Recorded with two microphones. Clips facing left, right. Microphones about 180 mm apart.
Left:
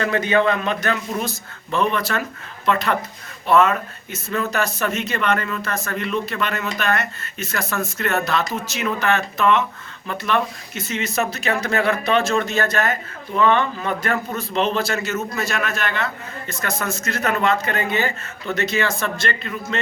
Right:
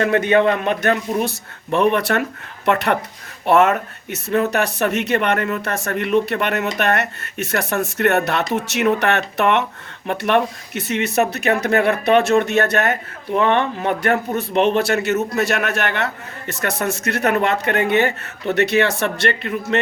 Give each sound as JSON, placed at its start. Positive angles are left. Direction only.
{"t": 0.0, "sound": "speech", "side_deg": -60}